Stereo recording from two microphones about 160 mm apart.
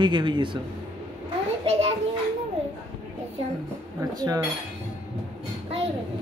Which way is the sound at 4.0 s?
20° right (ahead or behind).